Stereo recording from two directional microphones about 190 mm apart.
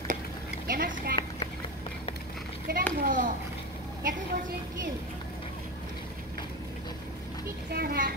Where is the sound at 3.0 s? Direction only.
45° right (ahead or behind).